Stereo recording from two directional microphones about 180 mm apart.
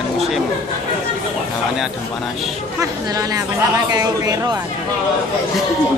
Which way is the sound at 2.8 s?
20° right (ahead or behind).